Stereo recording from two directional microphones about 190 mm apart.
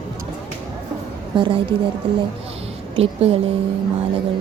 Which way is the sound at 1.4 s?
30° right (ahead or behind).